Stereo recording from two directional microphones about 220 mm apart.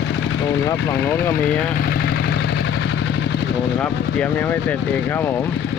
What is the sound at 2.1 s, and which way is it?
Vehicle, 45° left (ahead or behind).